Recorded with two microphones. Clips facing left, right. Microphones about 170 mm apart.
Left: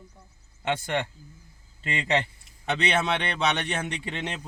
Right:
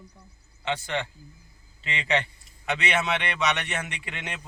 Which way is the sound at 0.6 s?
50° left (ahead or behind).